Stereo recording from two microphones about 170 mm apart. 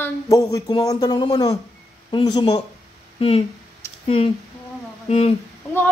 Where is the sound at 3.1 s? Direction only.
35° left (ahead or behind).